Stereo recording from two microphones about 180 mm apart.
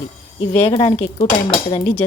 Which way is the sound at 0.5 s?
30° left (ahead or behind).